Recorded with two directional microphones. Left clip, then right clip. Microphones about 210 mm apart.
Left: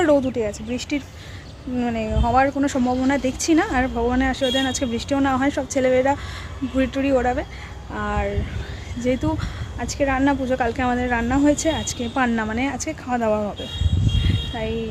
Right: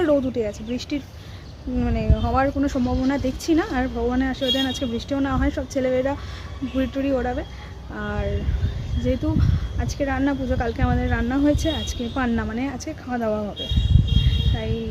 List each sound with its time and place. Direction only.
0.0 s a woman's voice: 5° left (ahead or behind)